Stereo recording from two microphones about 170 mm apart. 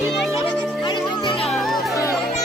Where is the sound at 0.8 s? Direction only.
30° left (ahead or behind).